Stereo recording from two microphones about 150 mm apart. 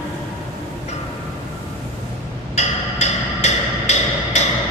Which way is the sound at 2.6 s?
50° left (ahead or behind).